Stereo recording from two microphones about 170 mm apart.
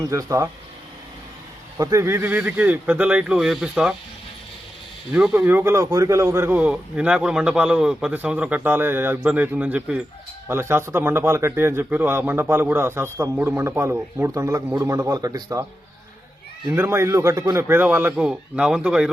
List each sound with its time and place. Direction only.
0.1 s a man's voice: 20° right (ahead or behind)
1.8 s a man's voice: 15° right (ahead or behind)
5.1 s a man's voice: 10° right (ahead or behind)
16.7 s a man's voice: 15° right (ahead or behind)